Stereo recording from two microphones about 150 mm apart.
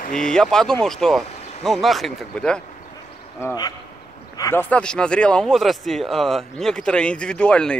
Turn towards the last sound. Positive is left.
turn(degrees=5)  # may be behind; listen again after turning